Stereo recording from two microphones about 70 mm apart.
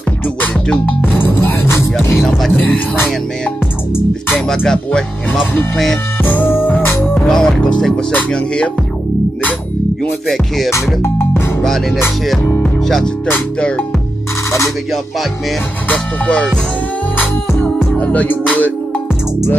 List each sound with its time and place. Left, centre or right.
0.7 s music: left
2.2 s music: centre
4.5 s speech: centre
6.2 s music: left
7.2 s speech: centre
10.2 s music: centre
11.0 s music: left
12.8 s speech: centre
13.6 s speech: centre
15.9 s music: centre
17.9 s music: left